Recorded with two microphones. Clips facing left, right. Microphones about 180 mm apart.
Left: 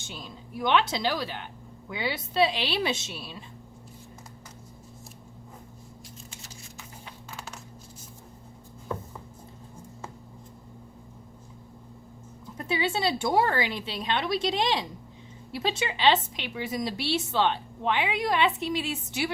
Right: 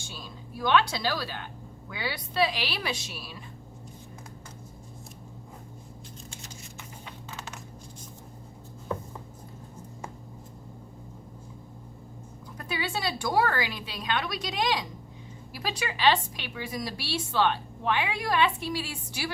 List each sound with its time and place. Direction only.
0.0 s a woman's voice: 20° left (ahead or behind)
12.5 s a woman's voice: 25° left (ahead or behind)